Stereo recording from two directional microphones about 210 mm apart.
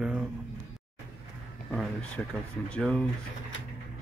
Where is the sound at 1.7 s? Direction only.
Centre (ahead or behind).